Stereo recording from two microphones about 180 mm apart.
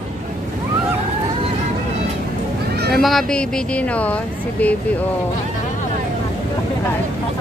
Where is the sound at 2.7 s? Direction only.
60° right (ahead or behind).